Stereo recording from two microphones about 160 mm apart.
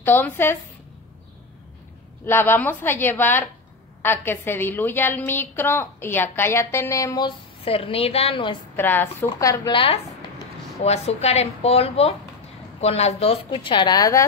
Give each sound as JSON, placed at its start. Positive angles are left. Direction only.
{"t": 0.0, "sound": "a woman's voice", "side_deg": 10}
{"t": 2.2, "sound": "a woman's voice", "side_deg": 15}
{"t": 8.7, "sound": "a woman's voice", "side_deg": 15}
{"t": 10.8, "sound": "speech", "side_deg": 40}